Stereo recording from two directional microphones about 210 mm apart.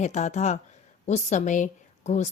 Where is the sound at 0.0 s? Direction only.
35° left (ahead or behind).